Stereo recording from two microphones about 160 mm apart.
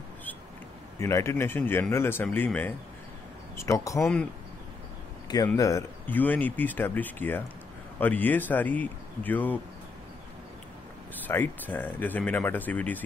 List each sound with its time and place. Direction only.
0.9 s speech: 20° left (ahead or behind)
4.0 s speech: 5° left (ahead or behind)
5.5 s speech: 20° left (ahead or behind)
11.2 s speech: 10° left (ahead or behind)